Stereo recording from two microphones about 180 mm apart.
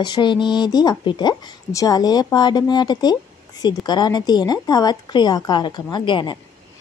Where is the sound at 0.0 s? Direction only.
25° left (ahead or behind).